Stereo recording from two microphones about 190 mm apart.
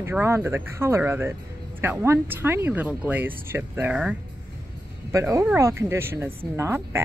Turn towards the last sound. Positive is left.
turn(degrees=-15)  # may be behind; listen again after turning